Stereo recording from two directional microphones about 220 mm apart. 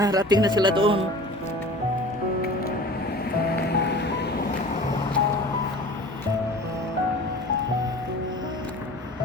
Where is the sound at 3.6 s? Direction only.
50° left (ahead or behind).